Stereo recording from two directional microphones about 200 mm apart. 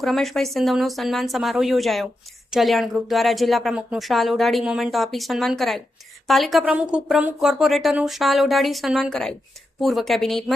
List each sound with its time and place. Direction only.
0.0 s speech: centre (ahead or behind)